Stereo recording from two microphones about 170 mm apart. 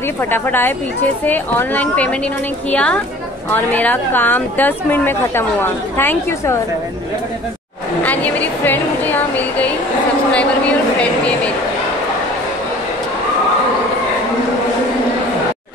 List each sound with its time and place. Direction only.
0.2 s a woman's voice: 15° left (ahead or behind)
8.0 s a woman's voice: 10° left (ahead or behind)